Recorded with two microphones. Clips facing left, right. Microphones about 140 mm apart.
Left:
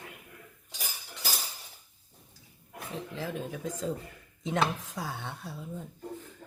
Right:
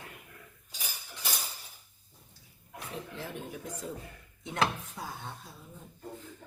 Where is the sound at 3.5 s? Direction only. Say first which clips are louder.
Left 6 dB; 90° left.